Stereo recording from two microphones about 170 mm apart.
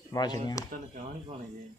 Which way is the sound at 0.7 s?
55° right (ahead or behind).